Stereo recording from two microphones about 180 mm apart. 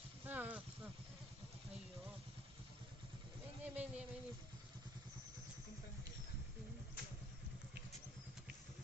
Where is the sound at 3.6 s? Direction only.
10° right (ahead or behind).